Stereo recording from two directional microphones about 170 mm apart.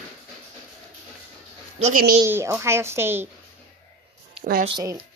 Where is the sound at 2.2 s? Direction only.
15° right (ahead or behind).